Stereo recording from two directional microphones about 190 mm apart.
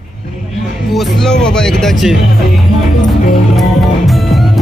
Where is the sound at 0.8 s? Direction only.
Centre (ahead or behind).